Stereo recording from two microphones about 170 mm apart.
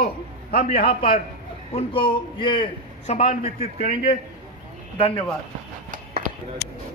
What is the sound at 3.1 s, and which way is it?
Speech, 45° left (ahead or behind).